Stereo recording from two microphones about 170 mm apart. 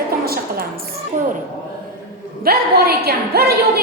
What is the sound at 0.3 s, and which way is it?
Music, 65° right (ahead or behind).